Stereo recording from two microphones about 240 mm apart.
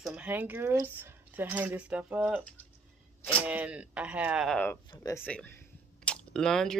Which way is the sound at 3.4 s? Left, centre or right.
Centre.